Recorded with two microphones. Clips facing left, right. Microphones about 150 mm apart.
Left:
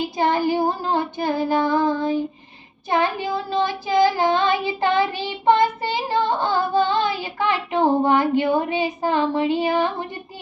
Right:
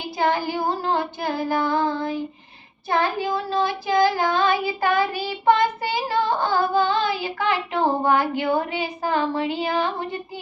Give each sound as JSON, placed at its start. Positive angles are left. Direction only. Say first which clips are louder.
{"t": 0.2, "sound": "child singing", "louder": "left 2 dB", "side_deg": 20}